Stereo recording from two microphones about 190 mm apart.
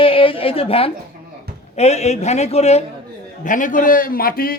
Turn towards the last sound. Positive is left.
turn(degrees=50)  # may be behind; listen again after turning